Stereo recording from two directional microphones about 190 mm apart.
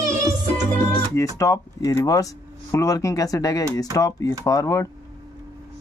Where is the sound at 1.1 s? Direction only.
15° left (ahead or behind).